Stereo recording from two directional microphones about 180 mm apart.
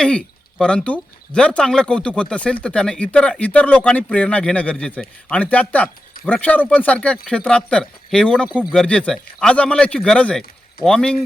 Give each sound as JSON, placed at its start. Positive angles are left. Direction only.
{"t": 0.0, "sound": "a man's voice", "side_deg": 5}
{"t": 8.4, "sound": "speech", "side_deg": -5}
{"t": 8.7, "sound": "a man's voice", "side_deg": 5}